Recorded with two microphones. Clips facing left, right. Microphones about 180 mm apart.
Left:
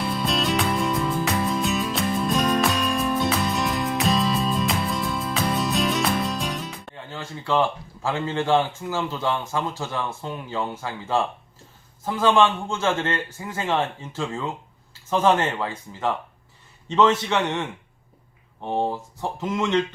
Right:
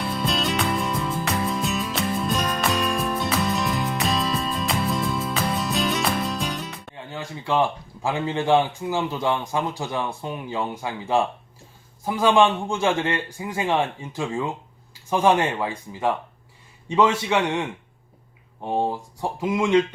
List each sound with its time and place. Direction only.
0.3 s music: centre (ahead or behind)
6.9 s music: 15° right (ahead or behind)
8.0 s a man's voice: 15° right (ahead or behind)